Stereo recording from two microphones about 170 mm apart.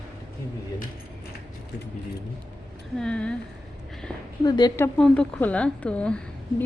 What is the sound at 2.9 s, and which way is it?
Speech, 5° left (ahead or behind).